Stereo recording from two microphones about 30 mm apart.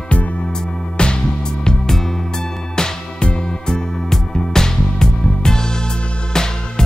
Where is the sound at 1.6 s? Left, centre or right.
Left.